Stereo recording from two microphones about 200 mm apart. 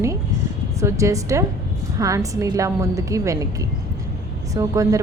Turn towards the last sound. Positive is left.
turn(degrees=-15)  # may be behind; listen again after turning